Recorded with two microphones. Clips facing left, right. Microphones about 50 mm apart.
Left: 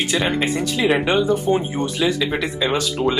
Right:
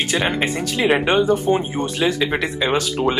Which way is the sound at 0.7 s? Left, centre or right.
Right.